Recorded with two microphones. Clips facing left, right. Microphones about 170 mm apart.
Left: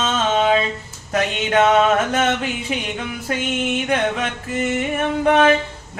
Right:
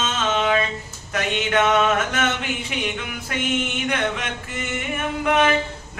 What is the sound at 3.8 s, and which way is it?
Music, 35° left (ahead or behind).